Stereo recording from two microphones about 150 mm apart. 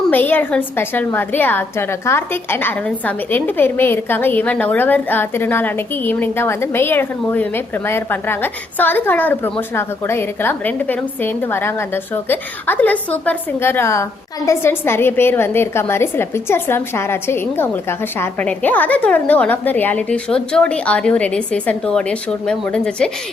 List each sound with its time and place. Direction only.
0.1 s a woman's voice: 10° left (ahead or behind)